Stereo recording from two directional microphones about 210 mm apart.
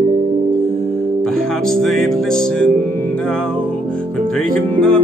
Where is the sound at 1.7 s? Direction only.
Centre (ahead or behind).